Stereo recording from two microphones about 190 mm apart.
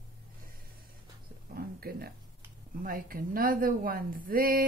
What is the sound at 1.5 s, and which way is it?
Speech, 55° right (ahead or behind).